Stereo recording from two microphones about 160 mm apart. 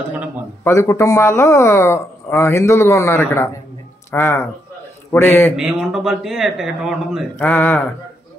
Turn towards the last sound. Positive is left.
turn(degrees=10)  # may be behind; listen again after turning